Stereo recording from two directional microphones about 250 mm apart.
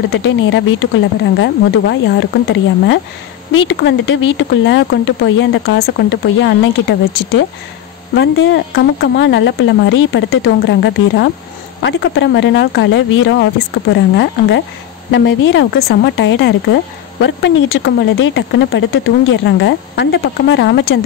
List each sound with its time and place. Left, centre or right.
0.1 s speech: left